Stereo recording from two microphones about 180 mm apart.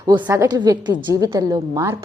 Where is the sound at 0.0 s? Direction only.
25° right (ahead or behind).